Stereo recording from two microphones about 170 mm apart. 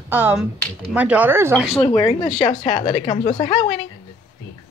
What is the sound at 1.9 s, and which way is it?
Speech, 25° left (ahead or behind).